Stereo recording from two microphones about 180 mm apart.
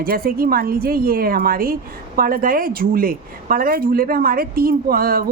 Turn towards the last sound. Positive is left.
turn(degrees=-55)  # may be behind; listen again after turning